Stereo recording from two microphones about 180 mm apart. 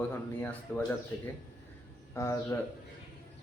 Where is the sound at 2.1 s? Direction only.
15° left (ahead or behind).